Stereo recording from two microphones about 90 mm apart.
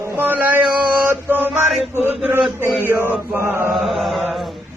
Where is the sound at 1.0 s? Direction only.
20° right (ahead or behind).